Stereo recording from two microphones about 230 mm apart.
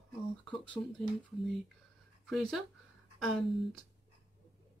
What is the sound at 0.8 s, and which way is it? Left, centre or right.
Speech, left.